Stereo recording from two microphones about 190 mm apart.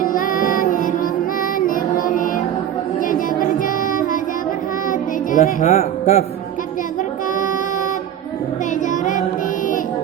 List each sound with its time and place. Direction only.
0.0 s music: 45° left (ahead or behind)
4.9 s music: 45° left (ahead or behind)